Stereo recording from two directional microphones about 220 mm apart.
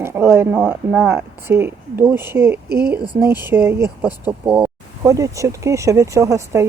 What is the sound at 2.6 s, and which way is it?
Speech, 45° right (ahead or behind).